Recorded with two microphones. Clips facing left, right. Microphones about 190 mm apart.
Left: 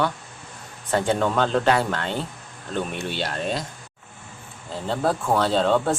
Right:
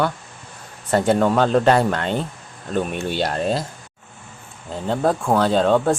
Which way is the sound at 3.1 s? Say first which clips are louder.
Right 6 dB; 40° right (ahead or behind).